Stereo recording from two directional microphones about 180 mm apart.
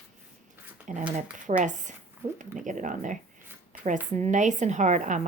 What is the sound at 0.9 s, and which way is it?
A woman's voice, 45° right (ahead or behind).